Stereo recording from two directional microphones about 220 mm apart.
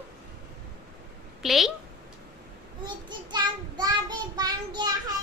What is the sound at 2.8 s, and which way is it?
Child singing, 20° right (ahead or behind).